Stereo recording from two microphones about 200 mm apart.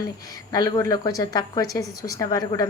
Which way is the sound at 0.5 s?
20° left (ahead or behind).